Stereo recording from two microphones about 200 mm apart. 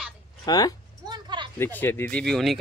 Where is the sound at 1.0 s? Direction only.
20° right (ahead or behind).